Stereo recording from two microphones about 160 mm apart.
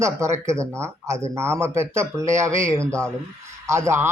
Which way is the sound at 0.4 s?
15° right (ahead or behind).